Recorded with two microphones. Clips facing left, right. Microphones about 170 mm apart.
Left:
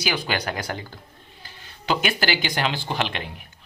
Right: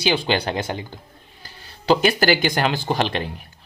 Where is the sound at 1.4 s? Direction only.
35° right (ahead or behind).